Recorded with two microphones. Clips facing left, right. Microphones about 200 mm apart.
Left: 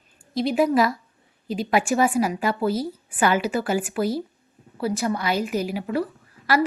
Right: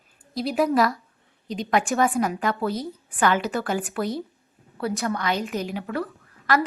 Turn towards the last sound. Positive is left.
turn(degrees=0)  # may be behind; listen again after turning